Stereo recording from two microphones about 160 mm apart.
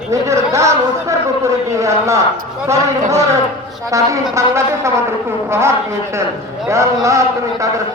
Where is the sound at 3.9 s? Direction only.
20° right (ahead or behind).